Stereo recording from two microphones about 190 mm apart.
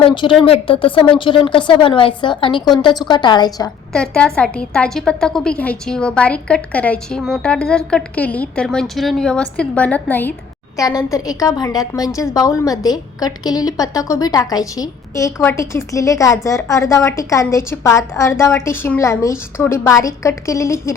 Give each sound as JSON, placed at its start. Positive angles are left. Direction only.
{"t": 0.0, "sound": "a woman's voice", "side_deg": 25}
{"t": 3.9, "sound": "a woman's voice", "side_deg": 5}